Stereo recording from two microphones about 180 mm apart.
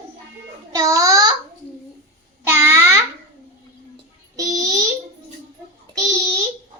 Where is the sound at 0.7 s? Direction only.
20° right (ahead or behind).